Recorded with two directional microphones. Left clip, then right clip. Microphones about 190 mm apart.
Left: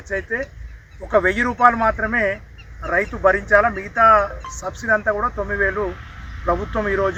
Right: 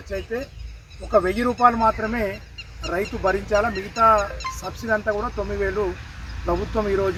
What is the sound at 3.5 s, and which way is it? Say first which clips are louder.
Speech: left 6 dB; 15° left (ahead or behind).